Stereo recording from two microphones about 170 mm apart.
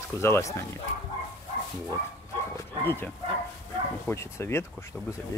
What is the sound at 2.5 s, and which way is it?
Bow-wow, 15° left (ahead or behind).